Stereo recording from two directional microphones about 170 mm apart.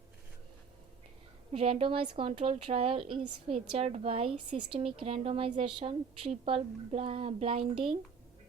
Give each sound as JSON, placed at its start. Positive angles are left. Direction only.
{"t": 1.5, "sound": "a woman's voice", "side_deg": -30}